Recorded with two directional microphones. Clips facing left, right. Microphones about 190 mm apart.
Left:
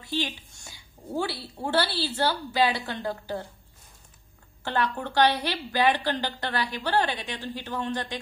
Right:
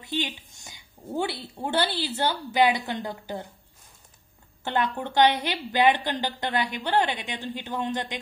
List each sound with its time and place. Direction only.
0.0 s a woman's voice: 20° right (ahead or behind)
4.6 s a woman's voice: 20° right (ahead or behind)